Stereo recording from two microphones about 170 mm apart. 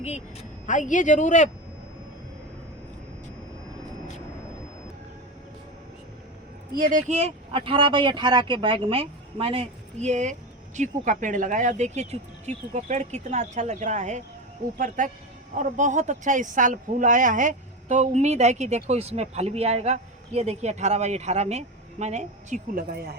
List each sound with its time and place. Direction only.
0.0 s speech: 40° left (ahead or behind)
6.7 s speech: 50° right (ahead or behind)